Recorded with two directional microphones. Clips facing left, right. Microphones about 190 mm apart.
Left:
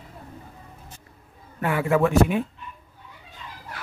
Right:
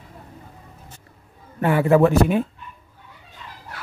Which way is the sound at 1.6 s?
35° right (ahead or behind).